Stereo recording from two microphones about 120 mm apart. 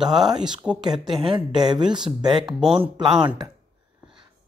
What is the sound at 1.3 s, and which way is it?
Speech, 35° right (ahead or behind).